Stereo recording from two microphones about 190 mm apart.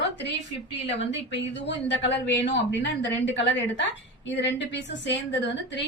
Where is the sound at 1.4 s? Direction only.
65° left (ahead or behind).